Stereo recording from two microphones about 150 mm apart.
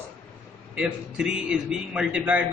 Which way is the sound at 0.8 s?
5° right (ahead or behind).